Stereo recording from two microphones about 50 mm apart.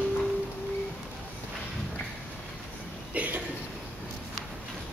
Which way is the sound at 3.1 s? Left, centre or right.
Right.